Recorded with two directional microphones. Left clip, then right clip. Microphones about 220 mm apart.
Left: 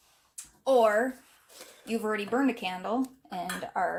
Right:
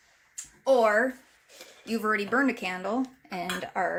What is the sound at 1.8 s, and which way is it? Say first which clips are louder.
Speech: right 3 dB; 15° right (ahead or behind).